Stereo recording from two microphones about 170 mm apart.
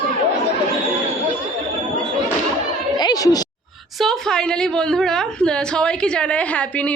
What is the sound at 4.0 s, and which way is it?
A woman's voice, centre (ahead or behind).